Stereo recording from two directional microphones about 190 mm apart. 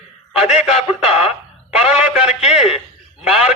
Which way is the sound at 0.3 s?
5° right (ahead or behind).